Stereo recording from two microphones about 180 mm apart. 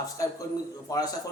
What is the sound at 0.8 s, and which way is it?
Speech, 20° left (ahead or behind).